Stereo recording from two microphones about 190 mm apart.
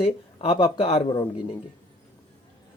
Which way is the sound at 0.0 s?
30° left (ahead or behind).